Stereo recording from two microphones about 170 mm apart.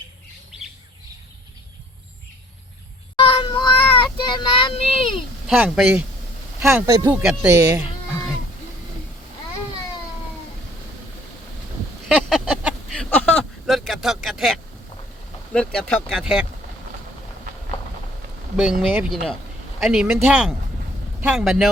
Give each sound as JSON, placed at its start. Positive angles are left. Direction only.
{"t": 3.2, "sound": "child singing", "side_deg": 35}
{"t": 5.5, "sound": "speech", "side_deg": -5}
{"t": 6.7, "sound": "speech", "side_deg": -20}
{"t": 7.2, "sound": "speech", "side_deg": -5}
{"t": 12.0, "sound": "a sound", "side_deg": 0}
{"t": 15.5, "sound": "speech", "side_deg": 5}
{"t": 16.0, "sound": "speech", "side_deg": -5}
{"t": 18.5, "sound": "speech", "side_deg": 0}